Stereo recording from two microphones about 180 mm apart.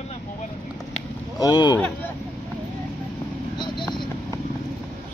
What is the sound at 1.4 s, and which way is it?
Speech, 25° left (ahead or behind).